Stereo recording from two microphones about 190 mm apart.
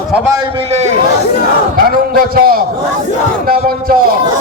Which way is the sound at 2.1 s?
50° right (ahead or behind).